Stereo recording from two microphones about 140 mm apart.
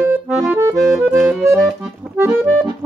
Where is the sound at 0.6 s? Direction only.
15° right (ahead or behind).